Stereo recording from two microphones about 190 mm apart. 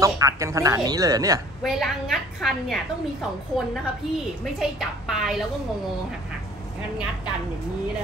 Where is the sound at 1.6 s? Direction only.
Centre (ahead or behind).